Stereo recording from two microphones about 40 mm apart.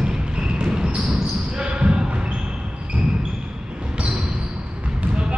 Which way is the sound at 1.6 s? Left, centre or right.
Right.